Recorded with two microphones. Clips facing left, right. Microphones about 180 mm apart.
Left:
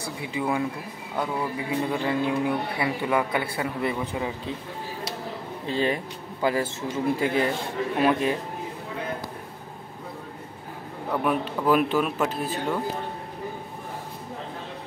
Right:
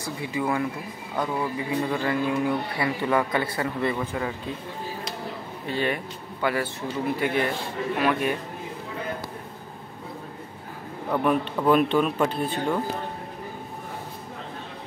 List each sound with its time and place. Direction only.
0.3 s a man's voice: 15° left (ahead or behind)
5.7 s a man's voice: 30° left (ahead or behind)
11.1 s speech: 5° left (ahead or behind)